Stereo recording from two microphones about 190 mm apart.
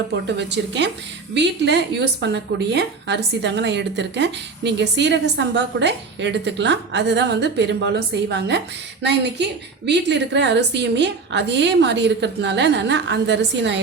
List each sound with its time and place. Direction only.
0.3 s a woman's voice: 65° right (ahead or behind)